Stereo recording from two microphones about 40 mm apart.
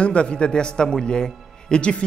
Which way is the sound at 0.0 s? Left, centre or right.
Left.